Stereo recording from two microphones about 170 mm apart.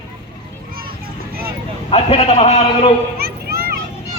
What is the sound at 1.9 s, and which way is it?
Speech, 35° left (ahead or behind).